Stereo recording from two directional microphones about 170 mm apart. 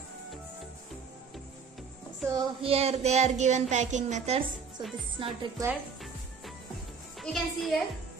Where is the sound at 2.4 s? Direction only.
35° right (ahead or behind).